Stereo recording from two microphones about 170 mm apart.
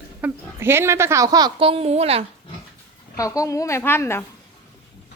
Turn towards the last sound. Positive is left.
turn(degrees=15)  # may be behind; listen again after turning